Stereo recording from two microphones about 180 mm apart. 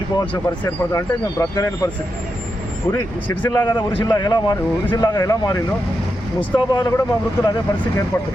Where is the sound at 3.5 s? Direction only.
25° left (ahead or behind).